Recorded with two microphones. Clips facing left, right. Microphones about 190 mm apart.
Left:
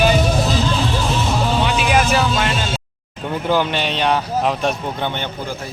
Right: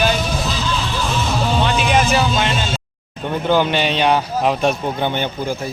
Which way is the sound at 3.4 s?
Centre (ahead or behind).